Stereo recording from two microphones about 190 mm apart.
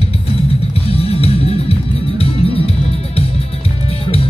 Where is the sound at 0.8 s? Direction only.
30° left (ahead or behind).